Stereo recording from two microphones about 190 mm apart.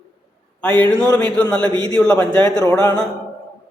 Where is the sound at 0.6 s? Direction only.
10° left (ahead or behind).